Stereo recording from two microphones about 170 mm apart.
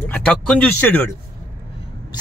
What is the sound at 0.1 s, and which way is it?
Speech, 5° left (ahead or behind).